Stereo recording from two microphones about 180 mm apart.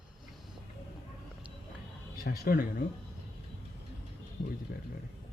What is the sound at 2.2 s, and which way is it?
Speech, 55° left (ahead or behind).